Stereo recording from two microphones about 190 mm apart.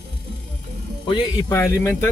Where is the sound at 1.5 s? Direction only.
15° left (ahead or behind).